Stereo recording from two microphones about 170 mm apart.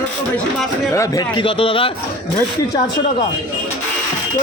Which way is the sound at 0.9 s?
20° left (ahead or behind).